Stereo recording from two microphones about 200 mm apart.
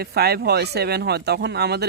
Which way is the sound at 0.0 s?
50° right (ahead or behind).